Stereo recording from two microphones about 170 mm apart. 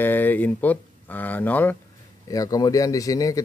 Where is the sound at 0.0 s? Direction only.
10° left (ahead or behind).